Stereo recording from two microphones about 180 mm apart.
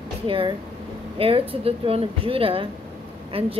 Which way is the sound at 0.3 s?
30° right (ahead or behind).